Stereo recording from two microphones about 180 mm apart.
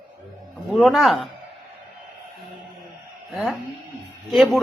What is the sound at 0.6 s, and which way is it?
Speech, centre (ahead or behind).